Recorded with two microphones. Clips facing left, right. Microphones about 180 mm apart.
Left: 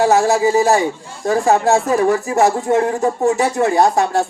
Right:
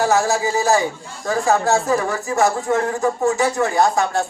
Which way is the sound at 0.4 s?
30° left (ahead or behind).